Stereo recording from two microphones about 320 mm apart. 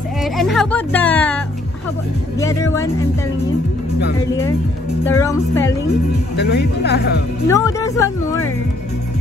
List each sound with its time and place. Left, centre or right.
0.2 s speech: centre
2.4 s speech: centre
5.0 s speech: centre
6.3 s speech: left
7.4 s speech: centre